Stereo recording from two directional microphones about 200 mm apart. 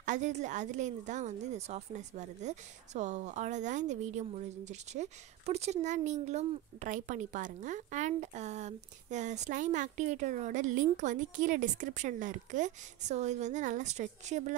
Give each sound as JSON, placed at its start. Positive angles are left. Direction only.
{"t": 0.0, "sound": "a woman's voice", "side_deg": -40}